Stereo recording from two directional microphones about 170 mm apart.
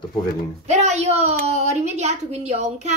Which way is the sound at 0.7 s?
40° right (ahead or behind).